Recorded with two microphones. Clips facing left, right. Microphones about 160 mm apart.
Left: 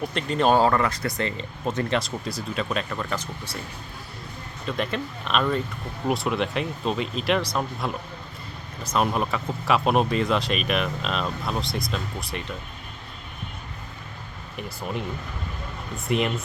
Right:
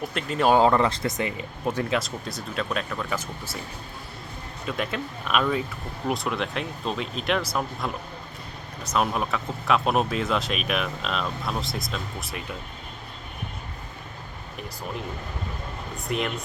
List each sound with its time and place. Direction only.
0.1 s speech: 5° right (ahead or behind)
0.6 s speech: 20° right (ahead or behind)
1.4 s speech: 10° right (ahead or behind)
4.6 s speech: 5° right (ahead or behind)
16.0 s speech: centre (ahead or behind)